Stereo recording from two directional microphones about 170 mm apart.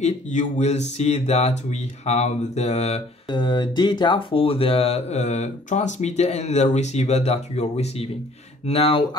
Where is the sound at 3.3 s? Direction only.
25° left (ahead or behind).